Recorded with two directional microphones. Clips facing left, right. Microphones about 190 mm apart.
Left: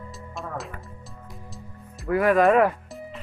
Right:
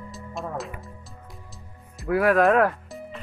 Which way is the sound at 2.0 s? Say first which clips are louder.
Even; centre (ahead or behind).